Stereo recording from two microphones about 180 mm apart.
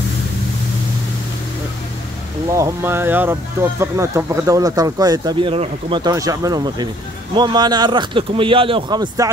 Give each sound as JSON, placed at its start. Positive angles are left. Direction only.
{"t": 2.5, "sound": "speech", "side_deg": -15}